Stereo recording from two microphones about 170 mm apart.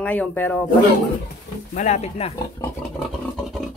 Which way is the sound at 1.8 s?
40° left (ahead or behind).